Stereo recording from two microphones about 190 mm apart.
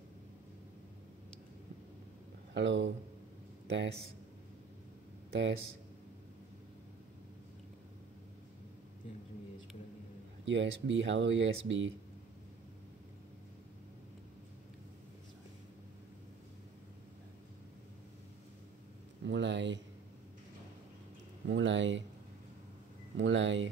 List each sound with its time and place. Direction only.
2.5 s speech: 70° right (ahead or behind)
10.4 s speech: 70° right (ahead or behind)
19.2 s speech: 70° right (ahead or behind)
21.5 s speech: 75° right (ahead or behind)
23.1 s speech: 75° right (ahead or behind)